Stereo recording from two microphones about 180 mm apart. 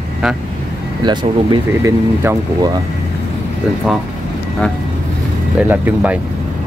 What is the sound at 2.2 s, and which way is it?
Speech, 15° right (ahead or behind).